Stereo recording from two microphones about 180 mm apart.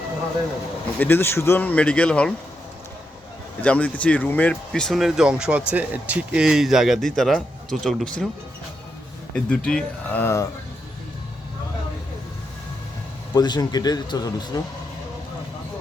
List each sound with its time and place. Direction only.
0.9 s speech: 10° left (ahead or behind)
3.6 s speech: 5° left (ahead or behind)
9.3 s speech: 5° left (ahead or behind)
13.3 s speech: 20° left (ahead or behind)